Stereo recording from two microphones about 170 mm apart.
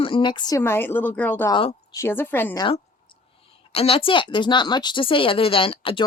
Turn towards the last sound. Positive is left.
turn(degrees=30)  # may be behind; listen again after turning